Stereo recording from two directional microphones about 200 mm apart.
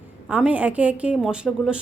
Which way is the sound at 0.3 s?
5° right (ahead or behind).